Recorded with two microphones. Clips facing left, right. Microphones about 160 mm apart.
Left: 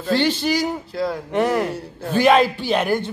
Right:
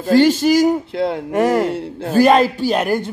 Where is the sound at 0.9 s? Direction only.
60° right (ahead or behind).